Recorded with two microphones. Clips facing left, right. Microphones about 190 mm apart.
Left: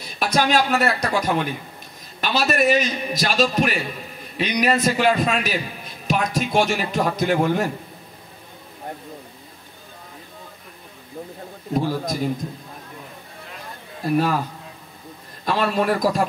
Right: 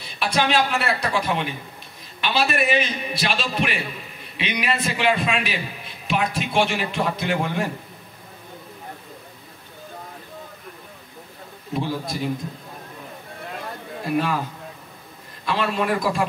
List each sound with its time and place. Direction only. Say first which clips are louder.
0.2 s a man's voice: left 2 dB; 40° left (ahead or behind)
11.7 s a man's voice: left 4 dB; 40° left (ahead or behind)
14.0 s a man's voice: left 3 dB; 40° left (ahead or behind)
15.4 s a man's voice: left 3 dB; 40° left (ahead or behind)